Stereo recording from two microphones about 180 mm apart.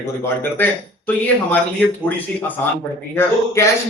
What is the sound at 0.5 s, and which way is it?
Speech, 10° left (ahead or behind).